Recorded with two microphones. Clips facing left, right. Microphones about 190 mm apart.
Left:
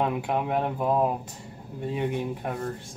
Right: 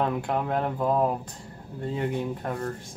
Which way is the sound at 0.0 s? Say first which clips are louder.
Even; 10° left (ahead or behind).